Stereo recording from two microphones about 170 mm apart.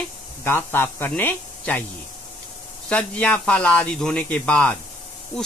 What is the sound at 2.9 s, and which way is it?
Speech, 5° left (ahead or behind).